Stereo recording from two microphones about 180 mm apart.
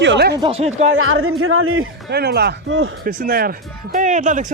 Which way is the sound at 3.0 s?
55° right (ahead or behind).